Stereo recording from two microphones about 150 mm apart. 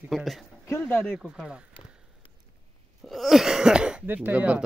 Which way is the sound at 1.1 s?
5° right (ahead or behind).